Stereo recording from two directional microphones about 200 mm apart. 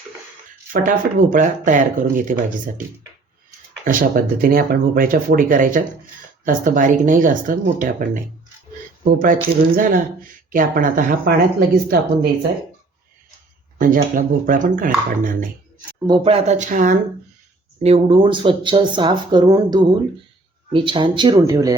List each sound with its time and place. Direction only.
0.7 s speech: 40° right (ahead or behind)
3.8 s speech: 45° right (ahead or behind)
13.7 s speech: 40° right (ahead or behind)
16.0 s speech: 25° right (ahead or behind)
17.8 s speech: 30° right (ahead or behind)